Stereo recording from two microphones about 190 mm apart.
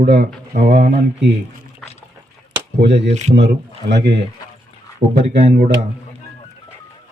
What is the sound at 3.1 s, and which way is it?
Speech, 35° right (ahead or behind).